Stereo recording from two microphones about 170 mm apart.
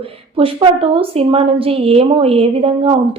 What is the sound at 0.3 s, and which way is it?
A woman's voice, 30° right (ahead or behind).